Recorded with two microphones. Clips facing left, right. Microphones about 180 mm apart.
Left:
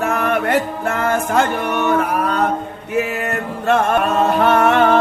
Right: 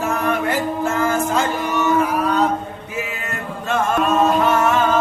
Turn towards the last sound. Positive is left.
turn(degrees=65)  # may be behind; listen again after turning